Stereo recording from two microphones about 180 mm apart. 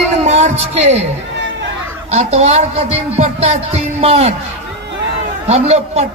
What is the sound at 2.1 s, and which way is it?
Speech, 35° right (ahead or behind).